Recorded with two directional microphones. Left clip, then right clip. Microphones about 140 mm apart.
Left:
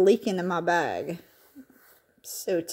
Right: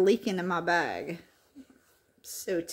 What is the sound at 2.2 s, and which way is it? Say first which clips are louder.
Speech: left 4 dB; 30° left (ahead or behind).